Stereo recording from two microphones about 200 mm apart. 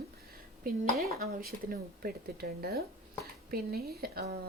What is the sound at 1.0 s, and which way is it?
Speech, 50° right (ahead or behind).